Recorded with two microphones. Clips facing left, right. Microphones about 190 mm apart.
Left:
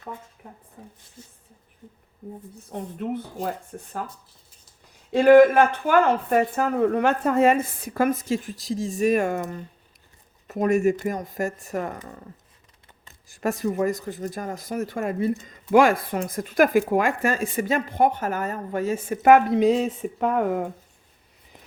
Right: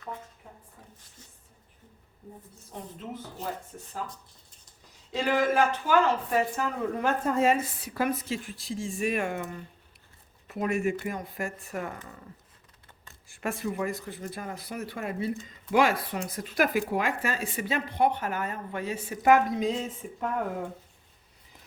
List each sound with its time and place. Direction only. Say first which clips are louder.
2.7 s speech: left 10 dB; 60° left (ahead or behind)
5.1 s speech: left 12 dB; 55° left (ahead or behind)
13.2 s speech: left 7 dB; 40° left (ahead or behind); by 20.7 s 70° left (ahead or behind)